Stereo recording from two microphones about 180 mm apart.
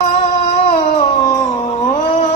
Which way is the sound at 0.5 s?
35° left (ahead or behind).